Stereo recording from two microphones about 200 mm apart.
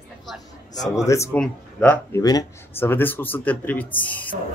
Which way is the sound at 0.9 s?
15° left (ahead or behind).